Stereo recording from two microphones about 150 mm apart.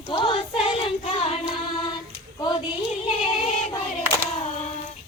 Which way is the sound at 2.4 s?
30° left (ahead or behind).